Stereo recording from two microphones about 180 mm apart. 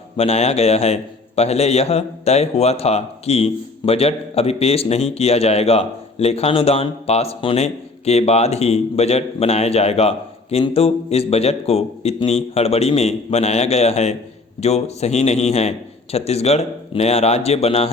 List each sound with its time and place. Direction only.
0.2 s a man's voice: 35° left (ahead or behind)